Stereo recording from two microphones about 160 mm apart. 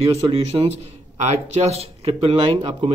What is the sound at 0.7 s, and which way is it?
Speech, 45° right (ahead or behind).